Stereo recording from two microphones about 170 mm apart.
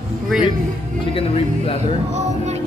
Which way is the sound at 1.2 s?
35° left (ahead or behind).